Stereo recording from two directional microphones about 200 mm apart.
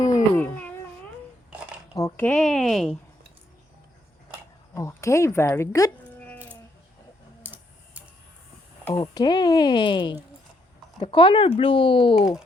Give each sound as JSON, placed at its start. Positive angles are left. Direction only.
{"t": 0.0, "sound": "a sound", "side_deg": 15}
{"t": 1.5, "sound": "dishes", "side_deg": -5}
{"t": 2.0, "sound": "speech", "side_deg": 15}
{"t": 4.7, "sound": "sheep", "side_deg": 15}
{"t": 7.4, "sound": "tick-tock", "side_deg": -10}
{"t": 8.9, "sound": "speech", "side_deg": 20}